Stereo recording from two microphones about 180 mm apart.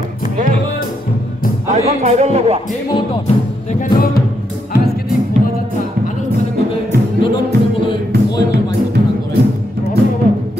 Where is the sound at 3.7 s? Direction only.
55° left (ahead or behind).